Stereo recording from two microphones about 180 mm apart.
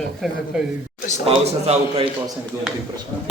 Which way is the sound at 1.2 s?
35° right (ahead or behind).